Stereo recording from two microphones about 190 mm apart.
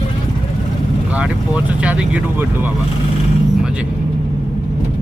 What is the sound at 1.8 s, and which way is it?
Speech, 5° right (ahead or behind).